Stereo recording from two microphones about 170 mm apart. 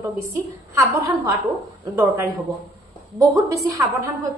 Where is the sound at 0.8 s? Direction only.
20° right (ahead or behind).